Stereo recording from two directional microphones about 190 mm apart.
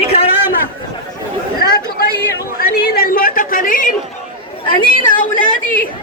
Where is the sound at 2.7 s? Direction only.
55° left (ahead or behind).